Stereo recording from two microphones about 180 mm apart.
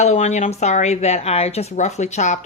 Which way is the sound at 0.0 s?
40° left (ahead or behind).